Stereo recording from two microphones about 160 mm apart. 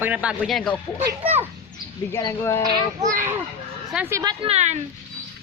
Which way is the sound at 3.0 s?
15° right (ahead or behind).